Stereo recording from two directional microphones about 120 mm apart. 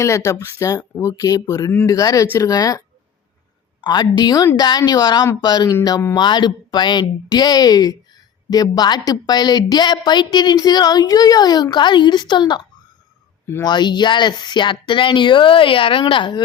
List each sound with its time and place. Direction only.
0.0 s speech: 25° left (ahead or behind)
3.8 s speech: 35° left (ahead or behind)
13.7 s speech: 40° left (ahead or behind)